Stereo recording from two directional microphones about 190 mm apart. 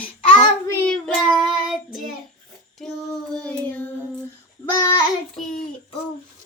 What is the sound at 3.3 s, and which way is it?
Child singing, 5° left (ahead or behind).